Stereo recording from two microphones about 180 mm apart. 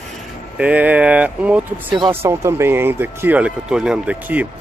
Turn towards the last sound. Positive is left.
turn(degrees=-10)  # may be behind; listen again after turning